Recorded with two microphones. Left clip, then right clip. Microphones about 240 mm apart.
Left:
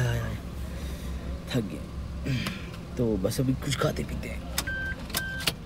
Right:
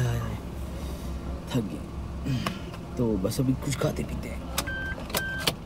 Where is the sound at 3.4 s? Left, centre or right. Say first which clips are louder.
Right 1 dB; centre.